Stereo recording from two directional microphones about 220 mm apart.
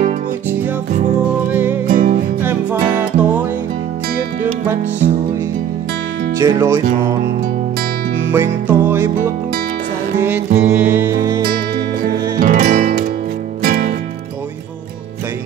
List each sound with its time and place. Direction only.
0.0 s music: 35° right (ahead or behind)
1.5 s music: 10° right (ahead or behind)
1.9 s music: 40° right (ahead or behind)
2.4 s music: 10° right (ahead or behind)
6.3 s music: 15° right (ahead or behind)
8.3 s music: 10° right (ahead or behind)
12.1 s music: 40° right (ahead or behind)